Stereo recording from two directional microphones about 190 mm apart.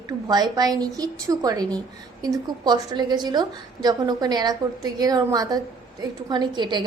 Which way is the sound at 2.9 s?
20° right (ahead or behind).